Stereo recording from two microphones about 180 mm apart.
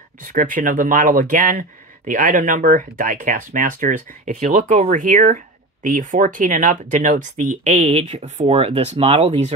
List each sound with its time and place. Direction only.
0.2 s speech: 50° right (ahead or behind)